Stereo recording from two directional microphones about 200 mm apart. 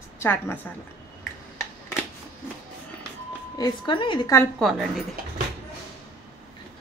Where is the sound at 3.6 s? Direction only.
25° left (ahead or behind).